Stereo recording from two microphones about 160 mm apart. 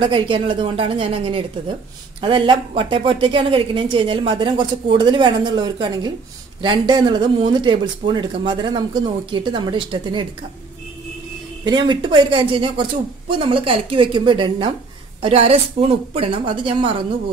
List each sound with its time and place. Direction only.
0.0 s speech: 30° right (ahead or behind)
11.6 s speech: 25° right (ahead or behind)